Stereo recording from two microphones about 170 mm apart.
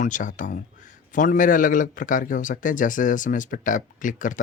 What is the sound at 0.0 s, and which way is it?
Speech, 50° left (ahead or behind).